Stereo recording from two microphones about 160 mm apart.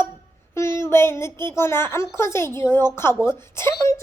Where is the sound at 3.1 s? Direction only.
5° right (ahead or behind).